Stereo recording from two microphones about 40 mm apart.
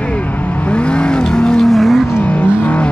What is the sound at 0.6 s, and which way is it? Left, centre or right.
Vehicle, left.